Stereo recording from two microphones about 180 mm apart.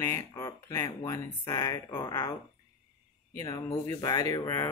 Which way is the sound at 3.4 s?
20° left (ahead or behind).